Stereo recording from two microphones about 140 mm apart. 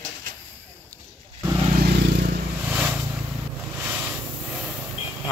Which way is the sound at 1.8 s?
90° right.